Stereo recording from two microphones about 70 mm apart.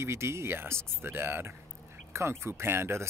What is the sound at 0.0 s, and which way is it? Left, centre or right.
Speech, right.